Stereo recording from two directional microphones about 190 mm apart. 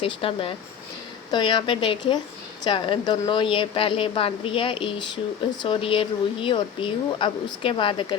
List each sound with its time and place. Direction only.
0.0 s speech: 30° left (ahead or behind)